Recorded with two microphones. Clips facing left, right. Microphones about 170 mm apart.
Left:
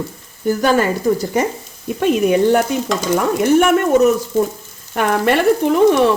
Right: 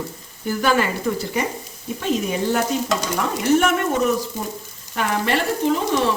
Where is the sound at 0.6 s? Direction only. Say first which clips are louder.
Left 4 dB; 40° left (ahead or behind).